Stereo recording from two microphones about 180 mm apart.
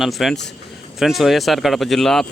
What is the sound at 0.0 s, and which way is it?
Speech, centre (ahead or behind).